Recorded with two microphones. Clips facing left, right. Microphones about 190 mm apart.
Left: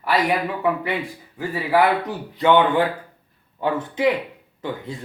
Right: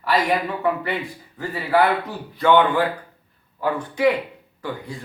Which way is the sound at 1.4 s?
15° left (ahead or behind).